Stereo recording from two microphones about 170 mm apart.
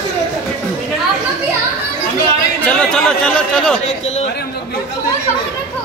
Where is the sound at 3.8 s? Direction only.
40° left (ahead or behind).